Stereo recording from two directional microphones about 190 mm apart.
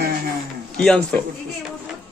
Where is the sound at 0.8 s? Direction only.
5° left (ahead or behind).